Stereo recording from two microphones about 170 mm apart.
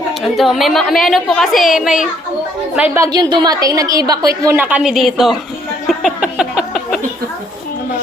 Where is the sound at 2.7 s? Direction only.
10° right (ahead or behind).